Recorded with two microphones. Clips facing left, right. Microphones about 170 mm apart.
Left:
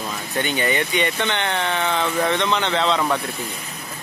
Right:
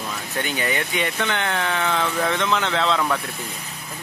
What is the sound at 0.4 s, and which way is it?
Speech, centre (ahead or behind).